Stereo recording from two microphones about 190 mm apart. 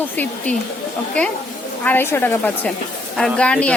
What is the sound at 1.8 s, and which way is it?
A woman's voice, 10° left (ahead or behind).